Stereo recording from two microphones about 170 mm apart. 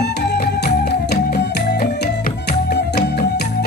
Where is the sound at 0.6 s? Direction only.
60° left (ahead or behind).